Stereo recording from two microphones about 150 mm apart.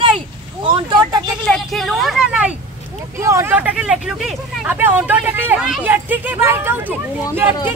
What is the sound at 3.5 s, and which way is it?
Speech, 5° right (ahead or behind).